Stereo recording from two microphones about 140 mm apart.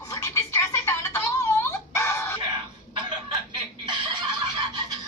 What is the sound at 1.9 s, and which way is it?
Dog, 20° left (ahead or behind).